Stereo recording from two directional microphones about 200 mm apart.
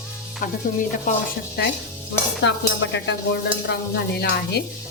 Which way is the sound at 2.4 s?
65° left (ahead or behind).